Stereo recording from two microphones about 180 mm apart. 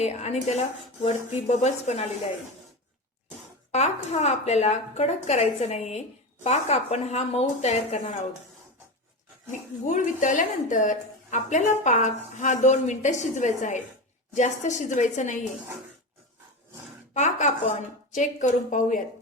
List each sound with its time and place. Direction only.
0.0 s a woman's voice: 40° left (ahead or behind)
3.7 s a woman's voice: 40° left (ahead or behind)
9.5 s a woman's voice: 45° left (ahead or behind)
17.2 s speech: 40° left (ahead or behind)